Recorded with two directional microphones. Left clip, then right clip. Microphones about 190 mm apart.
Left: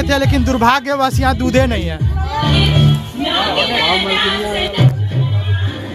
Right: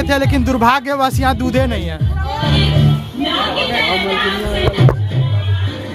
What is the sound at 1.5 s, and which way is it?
Speech, 10° left (ahead or behind).